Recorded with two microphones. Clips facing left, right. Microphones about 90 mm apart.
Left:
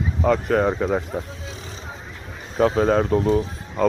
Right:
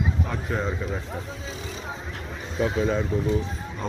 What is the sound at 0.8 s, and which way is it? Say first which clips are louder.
Speech: left 9 dB; 55° left (ahead or behind).